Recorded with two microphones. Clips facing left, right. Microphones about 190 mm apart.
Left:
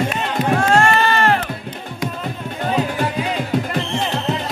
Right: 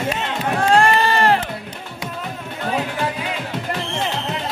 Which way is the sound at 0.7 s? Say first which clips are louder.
Right 3 dB; 30° right (ahead or behind).